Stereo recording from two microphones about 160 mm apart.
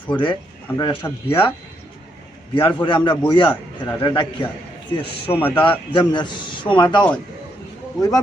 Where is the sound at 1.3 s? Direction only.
30° left (ahead or behind).